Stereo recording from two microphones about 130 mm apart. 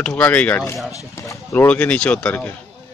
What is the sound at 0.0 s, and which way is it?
Speech, 15° left (ahead or behind).